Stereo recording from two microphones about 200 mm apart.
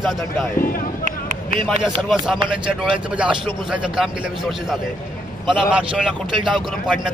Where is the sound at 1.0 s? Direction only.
40° right (ahead or behind).